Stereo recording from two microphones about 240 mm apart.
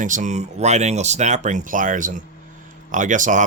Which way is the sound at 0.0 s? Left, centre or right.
Right.